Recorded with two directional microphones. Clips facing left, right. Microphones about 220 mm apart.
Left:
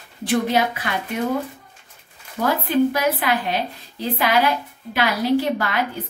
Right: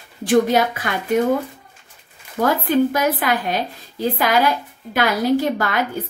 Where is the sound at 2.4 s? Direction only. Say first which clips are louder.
Right 2 dB; 45° right (ahead or behind).